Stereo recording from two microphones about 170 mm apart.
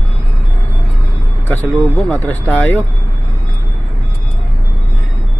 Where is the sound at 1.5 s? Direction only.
10° left (ahead or behind).